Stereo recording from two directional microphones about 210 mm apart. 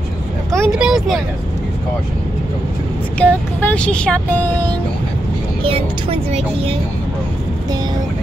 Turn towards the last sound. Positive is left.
turn(degrees=-30)  # may be behind; listen again after turning